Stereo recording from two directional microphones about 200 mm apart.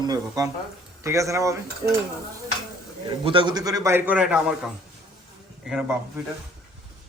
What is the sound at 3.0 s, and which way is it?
A man's voice, 25° right (ahead or behind).